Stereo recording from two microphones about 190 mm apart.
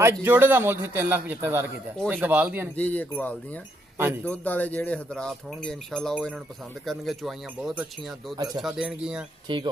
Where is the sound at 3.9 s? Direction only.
10° right (ahead or behind).